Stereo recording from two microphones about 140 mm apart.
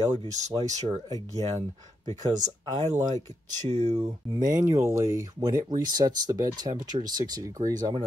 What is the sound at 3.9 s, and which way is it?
Speech, 30° right (ahead or behind).